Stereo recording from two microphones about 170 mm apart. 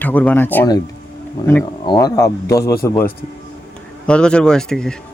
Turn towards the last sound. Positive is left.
turn(degrees=5)  # may be behind; listen again after turning